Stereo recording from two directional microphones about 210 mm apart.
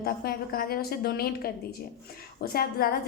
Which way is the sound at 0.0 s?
45° left (ahead or behind).